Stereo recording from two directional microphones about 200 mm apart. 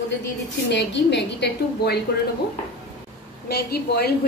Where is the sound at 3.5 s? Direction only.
50° left (ahead or behind).